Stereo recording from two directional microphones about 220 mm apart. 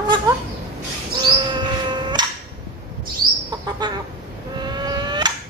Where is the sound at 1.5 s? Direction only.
20° right (ahead or behind).